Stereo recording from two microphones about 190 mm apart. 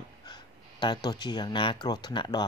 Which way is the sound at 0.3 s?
25° left (ahead or behind).